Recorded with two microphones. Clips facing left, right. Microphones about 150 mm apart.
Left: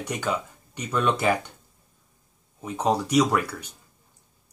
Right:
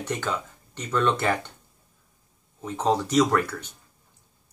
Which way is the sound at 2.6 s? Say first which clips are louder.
Even; 10° left (ahead or behind).